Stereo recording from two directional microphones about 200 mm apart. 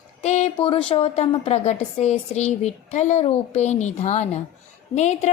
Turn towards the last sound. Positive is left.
turn(degrees=35)  # may be behind; listen again after turning